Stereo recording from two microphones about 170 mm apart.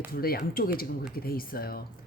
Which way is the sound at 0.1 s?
60° left (ahead or behind).